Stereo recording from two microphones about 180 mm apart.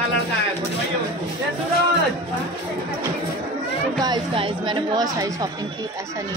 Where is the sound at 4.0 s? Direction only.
25° right (ahead or behind).